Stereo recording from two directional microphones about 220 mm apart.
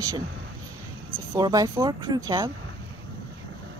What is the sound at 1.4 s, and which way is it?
A woman's voice, 15° right (ahead or behind).